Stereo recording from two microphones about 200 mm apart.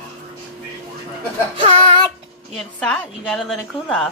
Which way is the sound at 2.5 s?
5° left (ahead or behind).